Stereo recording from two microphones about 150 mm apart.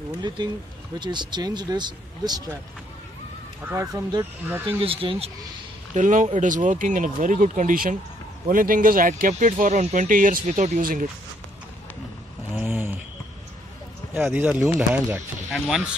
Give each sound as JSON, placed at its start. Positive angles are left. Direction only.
{"t": 0.1, "sound": "speech", "side_deg": -30}
{"t": 3.6, "sound": "speech", "side_deg": -20}
{"t": 4.6, "sound": "speech", "side_deg": -35}
{"t": 5.9, "sound": "speech", "side_deg": -55}
{"t": 12.5, "sound": "a sound", "side_deg": -10}
{"t": 14.1, "sound": "speech", "side_deg": -10}
{"t": 15.5, "sound": "speech", "side_deg": 0}